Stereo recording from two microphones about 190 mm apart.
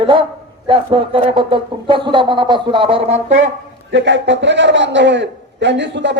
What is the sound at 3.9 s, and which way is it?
A man's voice, 70° right (ahead or behind).